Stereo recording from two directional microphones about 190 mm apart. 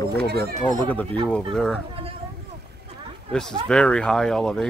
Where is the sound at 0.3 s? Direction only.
60° right (ahead or behind).